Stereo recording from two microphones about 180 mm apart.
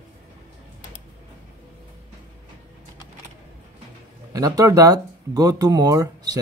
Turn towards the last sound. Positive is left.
turn(degrees=-20)  # may be behind; listen again after turning